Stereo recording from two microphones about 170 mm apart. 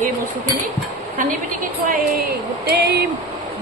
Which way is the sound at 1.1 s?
55° right (ahead or behind).